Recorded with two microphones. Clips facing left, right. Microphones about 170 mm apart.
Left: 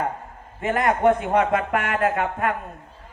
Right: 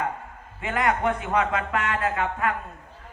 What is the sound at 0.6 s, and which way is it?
A man's voice, 45° left (ahead or behind).